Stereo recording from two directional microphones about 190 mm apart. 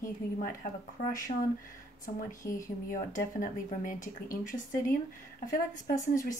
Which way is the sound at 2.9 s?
45° left (ahead or behind).